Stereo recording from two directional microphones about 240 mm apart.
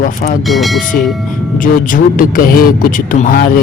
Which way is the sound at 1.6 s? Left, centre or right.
Left.